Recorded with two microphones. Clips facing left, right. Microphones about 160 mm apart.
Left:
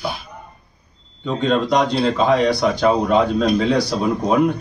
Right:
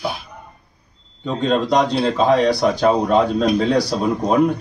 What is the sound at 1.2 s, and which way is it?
A man's voice, centre (ahead or behind).